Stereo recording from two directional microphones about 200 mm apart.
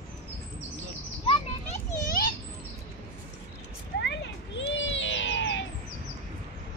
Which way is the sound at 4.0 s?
60° left (ahead or behind).